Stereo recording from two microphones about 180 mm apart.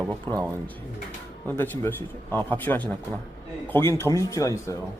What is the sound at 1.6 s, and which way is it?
Speech, 10° left (ahead or behind).